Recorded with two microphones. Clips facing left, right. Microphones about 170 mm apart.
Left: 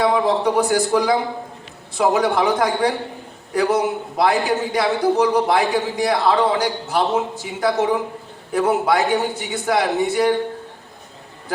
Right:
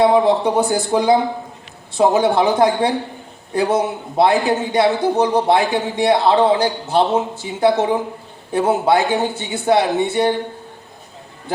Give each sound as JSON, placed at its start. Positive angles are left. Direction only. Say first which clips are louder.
{"t": 0.4, "sound": "a man's voice", "louder": "even", "side_deg": -30}